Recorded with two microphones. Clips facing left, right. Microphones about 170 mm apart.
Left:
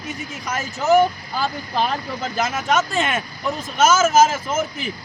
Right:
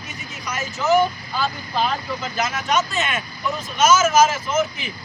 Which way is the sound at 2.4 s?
50° left (ahead or behind).